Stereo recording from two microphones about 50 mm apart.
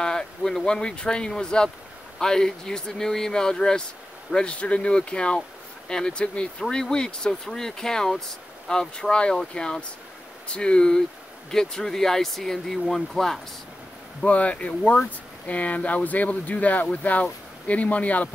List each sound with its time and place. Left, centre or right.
0.0 s speech: centre
14.2 s speech: left